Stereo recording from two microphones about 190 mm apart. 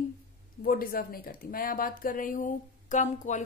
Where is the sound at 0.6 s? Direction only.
50° left (ahead or behind).